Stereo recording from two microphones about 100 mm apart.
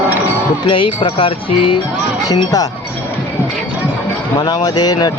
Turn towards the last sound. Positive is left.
turn(degrees=40)  # may be behind; listen again after turning